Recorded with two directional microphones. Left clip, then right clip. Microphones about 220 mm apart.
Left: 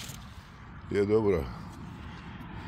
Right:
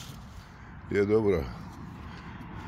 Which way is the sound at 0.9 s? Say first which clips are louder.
Right 1 dB; 10° right (ahead or behind).